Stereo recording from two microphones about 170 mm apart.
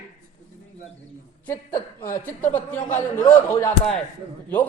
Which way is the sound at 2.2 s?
10° left (ahead or behind).